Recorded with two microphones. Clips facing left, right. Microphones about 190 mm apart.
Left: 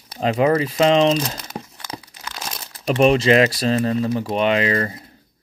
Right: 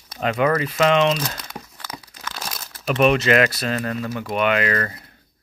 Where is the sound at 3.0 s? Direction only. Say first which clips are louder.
Left 2 dB; 30° left (ahead or behind).